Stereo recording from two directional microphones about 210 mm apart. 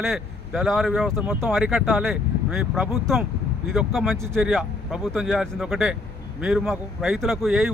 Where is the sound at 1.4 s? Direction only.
10° right (ahead or behind).